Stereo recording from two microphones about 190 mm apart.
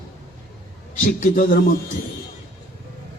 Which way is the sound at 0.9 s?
40° left (ahead or behind).